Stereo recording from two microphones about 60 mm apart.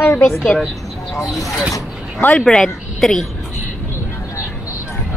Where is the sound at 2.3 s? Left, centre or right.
Centre.